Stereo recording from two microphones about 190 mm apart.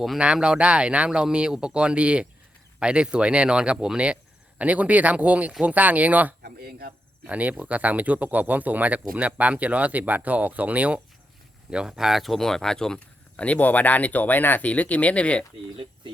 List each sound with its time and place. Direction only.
0.0 s speech: 5° right (ahead or behind)
6.4 s speech: 55° right (ahead or behind)
7.3 s speech: 5° right (ahead or behind)